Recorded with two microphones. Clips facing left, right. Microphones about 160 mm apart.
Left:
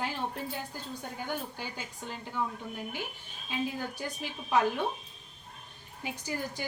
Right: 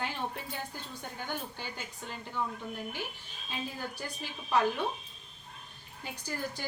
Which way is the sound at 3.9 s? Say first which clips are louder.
Left 3 dB; 20° left (ahead or behind).